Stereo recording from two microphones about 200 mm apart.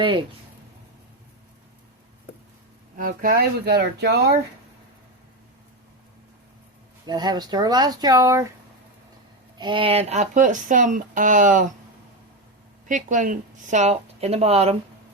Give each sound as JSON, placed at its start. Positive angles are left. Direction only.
{"t": 3.0, "sound": "speech", "side_deg": -45}
{"t": 7.1, "sound": "speech", "side_deg": -20}
{"t": 9.6, "sound": "speech", "side_deg": -25}
{"t": 12.9, "sound": "speech", "side_deg": -40}